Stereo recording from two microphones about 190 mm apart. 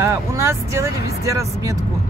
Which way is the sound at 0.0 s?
15° right (ahead or behind).